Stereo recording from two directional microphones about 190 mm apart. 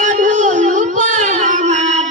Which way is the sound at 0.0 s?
40° right (ahead or behind).